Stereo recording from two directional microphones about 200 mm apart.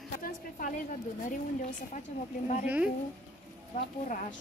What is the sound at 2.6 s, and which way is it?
Speech, 10° right (ahead or behind).